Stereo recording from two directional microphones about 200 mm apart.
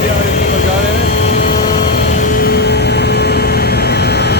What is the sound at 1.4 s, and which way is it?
Vehicle, 50° left (ahead or behind).